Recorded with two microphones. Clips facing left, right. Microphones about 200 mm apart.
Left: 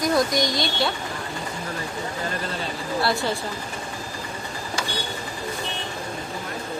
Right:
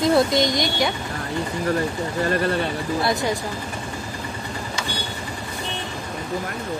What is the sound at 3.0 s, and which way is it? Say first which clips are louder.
Speech: right 1 dB; 15° right (ahead or behind).